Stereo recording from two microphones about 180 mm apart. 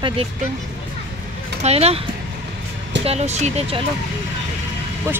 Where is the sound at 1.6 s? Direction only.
35° right (ahead or behind).